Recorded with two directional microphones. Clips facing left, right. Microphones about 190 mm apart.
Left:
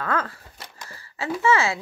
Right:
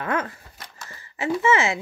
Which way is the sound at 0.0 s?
20° right (ahead or behind).